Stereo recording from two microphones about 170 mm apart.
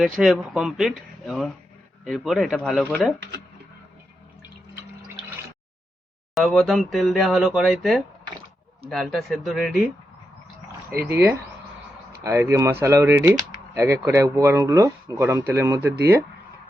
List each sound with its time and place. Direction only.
0.0 s speech: centre (ahead or behind)
6.3 s speech: centre (ahead or behind)